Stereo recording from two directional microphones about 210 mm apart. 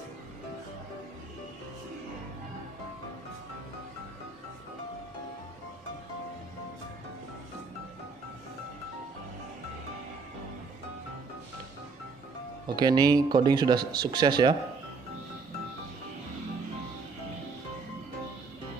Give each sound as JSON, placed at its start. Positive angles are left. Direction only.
{"t": 12.6, "sound": "speech", "side_deg": -20}